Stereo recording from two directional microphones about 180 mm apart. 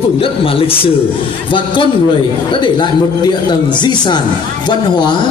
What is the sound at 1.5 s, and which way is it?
Speech, 25° left (ahead or behind).